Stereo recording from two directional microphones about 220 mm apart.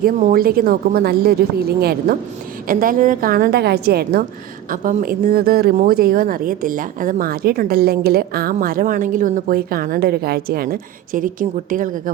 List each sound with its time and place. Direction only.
0.0 s speech: 40° right (ahead or behind)